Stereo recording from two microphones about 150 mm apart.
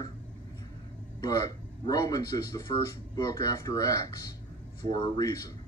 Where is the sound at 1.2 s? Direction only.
25° left (ahead or behind).